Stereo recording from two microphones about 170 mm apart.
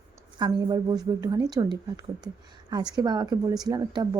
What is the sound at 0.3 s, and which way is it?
A woman's voice, 25° right (ahead or behind).